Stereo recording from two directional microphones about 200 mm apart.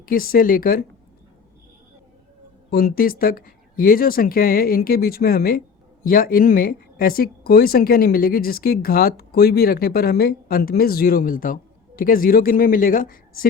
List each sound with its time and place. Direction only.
0.0 s speech: 45° left (ahead or behind)
2.6 s speech: 50° left (ahead or behind)